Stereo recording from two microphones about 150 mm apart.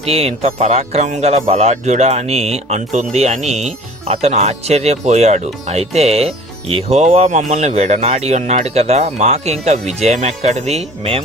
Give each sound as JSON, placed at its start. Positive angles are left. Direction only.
{"t": 0.0, "sound": "speech", "side_deg": -40}